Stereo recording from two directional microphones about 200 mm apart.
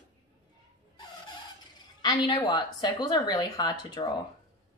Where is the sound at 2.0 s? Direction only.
25° left (ahead or behind).